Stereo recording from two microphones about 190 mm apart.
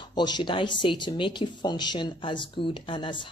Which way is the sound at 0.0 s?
25° left (ahead or behind).